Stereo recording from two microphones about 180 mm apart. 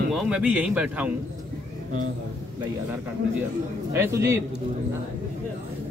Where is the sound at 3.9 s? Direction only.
15° right (ahead or behind).